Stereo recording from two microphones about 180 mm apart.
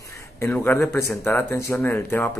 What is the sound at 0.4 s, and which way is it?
Speech, 15° left (ahead or behind).